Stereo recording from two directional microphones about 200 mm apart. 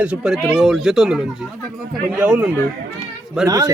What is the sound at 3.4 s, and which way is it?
Speech, 20° right (ahead or behind).